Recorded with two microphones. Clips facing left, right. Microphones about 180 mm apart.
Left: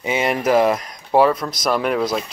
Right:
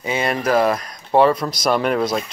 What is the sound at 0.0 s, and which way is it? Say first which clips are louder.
Speech: left 1 dB; 15° left (ahead or behind).